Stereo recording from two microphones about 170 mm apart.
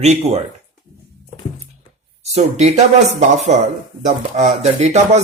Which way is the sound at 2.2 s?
40° right (ahead or behind).